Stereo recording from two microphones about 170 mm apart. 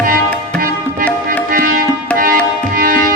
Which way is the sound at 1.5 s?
55° right (ahead or behind).